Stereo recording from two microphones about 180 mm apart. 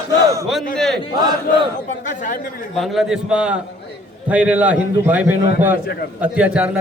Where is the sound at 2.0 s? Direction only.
45° left (ahead or behind).